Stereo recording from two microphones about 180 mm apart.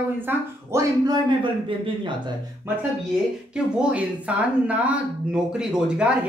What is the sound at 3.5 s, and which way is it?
Speech, 5° right (ahead or behind).